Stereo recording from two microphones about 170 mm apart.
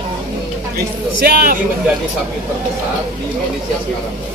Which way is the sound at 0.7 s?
65° right (ahead or behind).